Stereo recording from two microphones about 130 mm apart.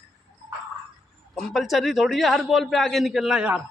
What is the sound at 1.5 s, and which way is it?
A man's voice, centre (ahead or behind).